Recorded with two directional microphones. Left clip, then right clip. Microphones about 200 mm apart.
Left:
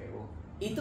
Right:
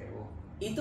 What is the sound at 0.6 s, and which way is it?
Speech, 15° left (ahead or behind).